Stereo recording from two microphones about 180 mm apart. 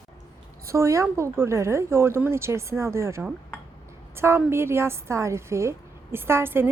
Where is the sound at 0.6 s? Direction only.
15° right (ahead or behind).